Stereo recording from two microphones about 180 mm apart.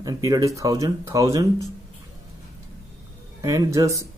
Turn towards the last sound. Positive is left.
turn(degrees=-15)  # may be behind; listen again after turning